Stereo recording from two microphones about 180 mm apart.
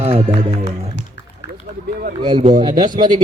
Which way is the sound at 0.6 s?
85° left.